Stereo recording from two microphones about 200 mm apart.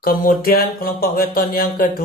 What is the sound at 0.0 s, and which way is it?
Speech, 45° left (ahead or behind).